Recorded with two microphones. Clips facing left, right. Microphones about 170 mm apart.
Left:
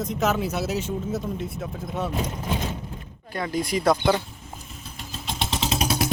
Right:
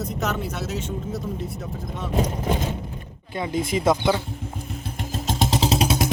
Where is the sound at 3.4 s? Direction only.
20° right (ahead or behind).